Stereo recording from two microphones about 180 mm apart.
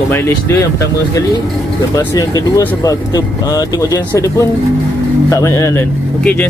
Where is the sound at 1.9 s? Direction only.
20° left (ahead or behind).